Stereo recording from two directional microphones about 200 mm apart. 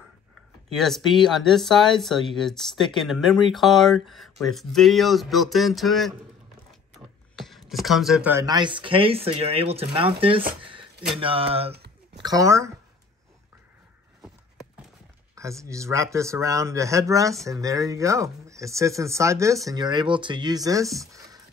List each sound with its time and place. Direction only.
0.7 s speech: centre (ahead or behind); by 10.4 s 25° right (ahead or behind)
10.6 s a sound: 25° right (ahead or behind)
11.1 s speech: 25° right (ahead or behind)
11.7 s a sound: 55° right (ahead or behind)
12.2 s speech: 20° right (ahead or behind)
15.3 s speech: 15° right (ahead or behind)